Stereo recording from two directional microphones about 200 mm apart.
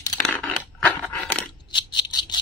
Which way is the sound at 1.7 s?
20° left (ahead or behind).